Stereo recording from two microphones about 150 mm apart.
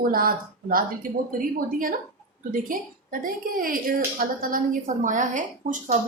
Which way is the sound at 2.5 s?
70° right (ahead or behind).